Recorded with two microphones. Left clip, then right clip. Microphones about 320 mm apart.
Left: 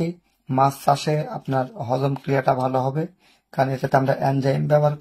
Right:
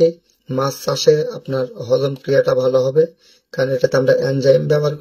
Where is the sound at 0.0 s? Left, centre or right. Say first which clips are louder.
Right 15 dB; centre.